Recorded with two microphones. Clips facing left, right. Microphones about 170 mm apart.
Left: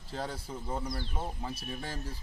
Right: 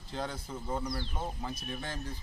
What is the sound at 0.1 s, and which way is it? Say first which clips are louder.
A man's voice: even; 5° left (ahead or behind).